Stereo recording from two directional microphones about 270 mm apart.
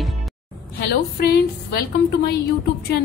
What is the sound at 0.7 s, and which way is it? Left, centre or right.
A woman's voice, left.